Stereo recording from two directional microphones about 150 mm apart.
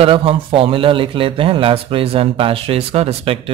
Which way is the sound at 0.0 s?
35° right (ahead or behind).